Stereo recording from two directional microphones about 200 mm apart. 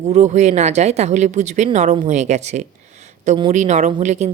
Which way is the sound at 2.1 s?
35° right (ahead or behind).